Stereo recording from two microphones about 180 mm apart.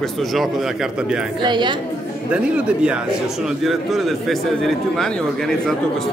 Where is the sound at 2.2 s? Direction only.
5° right (ahead or behind).